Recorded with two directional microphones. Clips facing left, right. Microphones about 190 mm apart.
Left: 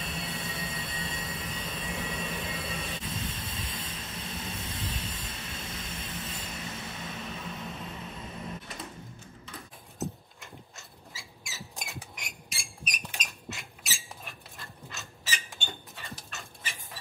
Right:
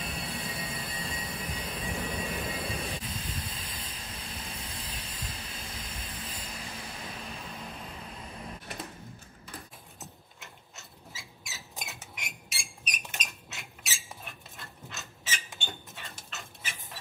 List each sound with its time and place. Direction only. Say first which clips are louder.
0.0 s vehicle: even; 25° left (ahead or behind)
10.4 s a sound: left 3 dB; centre (ahead or behind)
12.2 s rodents: even; centre (ahead or behind)
14.6 s mechanisms: even; centre (ahead or behind)